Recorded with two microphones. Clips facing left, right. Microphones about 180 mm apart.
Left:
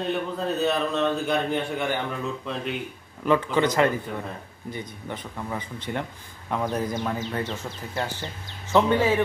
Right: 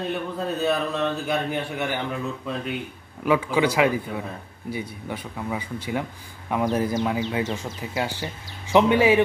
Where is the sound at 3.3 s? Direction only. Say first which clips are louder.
Right 1 dB; 10° right (ahead or behind).